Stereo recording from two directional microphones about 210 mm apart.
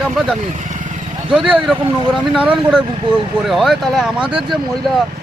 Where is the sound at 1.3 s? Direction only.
5° right (ahead or behind).